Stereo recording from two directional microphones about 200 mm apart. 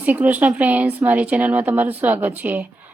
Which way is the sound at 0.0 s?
10° right (ahead or behind).